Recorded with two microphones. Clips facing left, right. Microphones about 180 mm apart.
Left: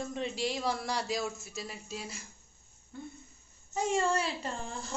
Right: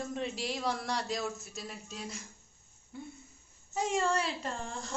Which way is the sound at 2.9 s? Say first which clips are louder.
Left 1 dB; 10° right (ahead or behind).